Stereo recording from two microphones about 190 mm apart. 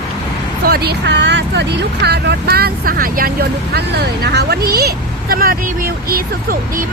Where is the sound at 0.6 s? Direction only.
55° right (ahead or behind).